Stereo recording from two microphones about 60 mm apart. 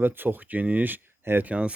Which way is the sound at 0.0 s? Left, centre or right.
Right.